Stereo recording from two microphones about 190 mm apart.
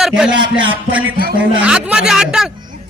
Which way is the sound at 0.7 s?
10° right (ahead or behind).